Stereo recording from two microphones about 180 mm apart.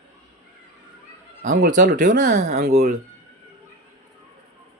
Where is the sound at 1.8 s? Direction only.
50° right (ahead or behind).